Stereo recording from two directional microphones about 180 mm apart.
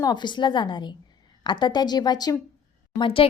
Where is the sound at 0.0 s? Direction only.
25° left (ahead or behind).